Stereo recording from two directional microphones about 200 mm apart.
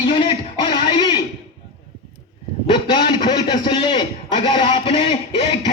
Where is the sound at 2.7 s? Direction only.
25° left (ahead or behind).